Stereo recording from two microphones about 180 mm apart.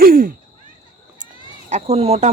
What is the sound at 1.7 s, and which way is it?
Speech, 40° right (ahead or behind).